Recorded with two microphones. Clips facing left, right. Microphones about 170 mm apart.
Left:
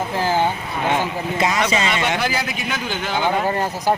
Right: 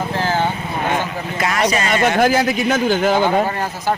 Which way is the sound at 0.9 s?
20° left (ahead or behind).